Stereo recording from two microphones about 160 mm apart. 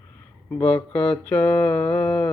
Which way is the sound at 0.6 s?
10° left (ahead or behind).